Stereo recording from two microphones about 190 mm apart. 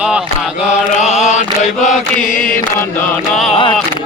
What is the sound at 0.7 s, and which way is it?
Chant, 40° left (ahead or behind).